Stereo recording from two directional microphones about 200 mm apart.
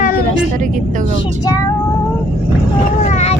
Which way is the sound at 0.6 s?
40° right (ahead or behind).